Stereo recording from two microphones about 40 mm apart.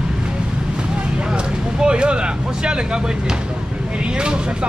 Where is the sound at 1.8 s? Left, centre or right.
Right.